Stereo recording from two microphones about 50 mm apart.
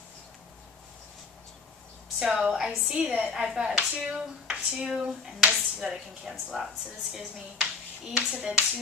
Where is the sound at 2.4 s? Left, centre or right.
Centre.